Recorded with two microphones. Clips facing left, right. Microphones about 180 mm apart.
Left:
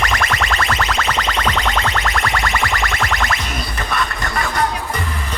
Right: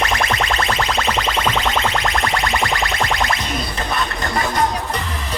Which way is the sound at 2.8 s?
20° right (ahead or behind).